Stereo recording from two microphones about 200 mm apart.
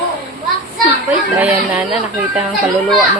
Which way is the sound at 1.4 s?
5° right (ahead or behind).